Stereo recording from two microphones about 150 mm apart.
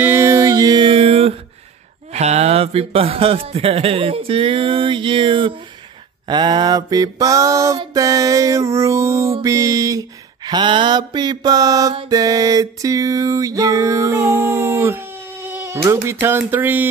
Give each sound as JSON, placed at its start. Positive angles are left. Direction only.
{"t": 0.0, "sound": "music", "side_deg": -15}
{"t": 2.1, "sound": "a man's voice", "side_deg": -45}
{"t": 6.2, "sound": "music", "side_deg": -30}
{"t": 15.4, "sound": "speech", "side_deg": -15}